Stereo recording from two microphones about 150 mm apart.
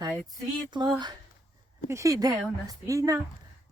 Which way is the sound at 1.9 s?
20° right (ahead or behind).